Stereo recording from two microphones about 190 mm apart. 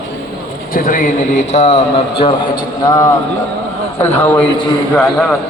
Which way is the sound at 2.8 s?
20° left (ahead or behind).